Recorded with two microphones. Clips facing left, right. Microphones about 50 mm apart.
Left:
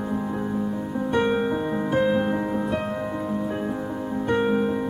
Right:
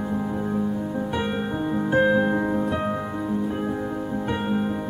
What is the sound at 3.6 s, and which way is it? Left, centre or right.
Music, centre.